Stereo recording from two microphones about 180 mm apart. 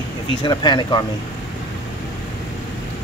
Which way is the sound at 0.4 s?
25° left (ahead or behind).